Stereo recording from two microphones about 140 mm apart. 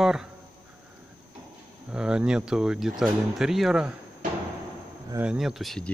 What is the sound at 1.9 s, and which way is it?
Speech, 5° right (ahead or behind).